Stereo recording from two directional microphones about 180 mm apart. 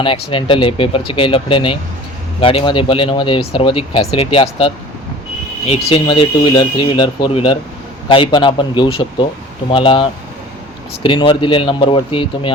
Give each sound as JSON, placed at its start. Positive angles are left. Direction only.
{"t": 0.3, "sound": "speech", "side_deg": 30}